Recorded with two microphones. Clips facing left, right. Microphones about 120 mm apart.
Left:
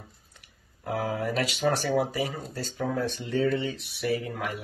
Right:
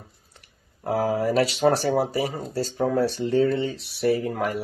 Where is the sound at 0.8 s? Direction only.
35° right (ahead or behind).